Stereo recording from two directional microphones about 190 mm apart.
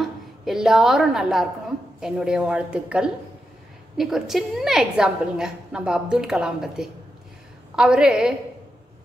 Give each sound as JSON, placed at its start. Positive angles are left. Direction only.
{"t": 0.0, "sound": "a woman's voice", "side_deg": 0}